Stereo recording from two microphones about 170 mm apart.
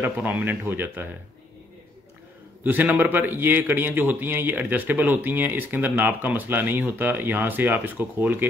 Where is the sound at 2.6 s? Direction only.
10° right (ahead or behind).